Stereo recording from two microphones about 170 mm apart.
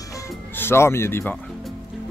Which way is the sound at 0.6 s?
15° left (ahead or behind).